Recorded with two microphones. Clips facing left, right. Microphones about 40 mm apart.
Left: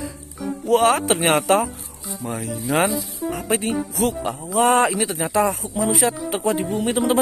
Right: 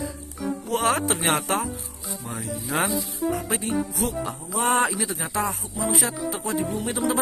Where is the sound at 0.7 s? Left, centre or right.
Left.